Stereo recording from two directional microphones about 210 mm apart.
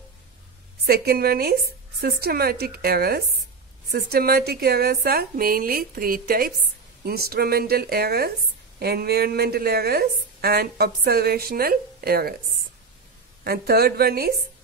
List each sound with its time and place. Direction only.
0.8 s a woman's voice: 50° right (ahead or behind)
13.4 s a woman's voice: 45° right (ahead or behind)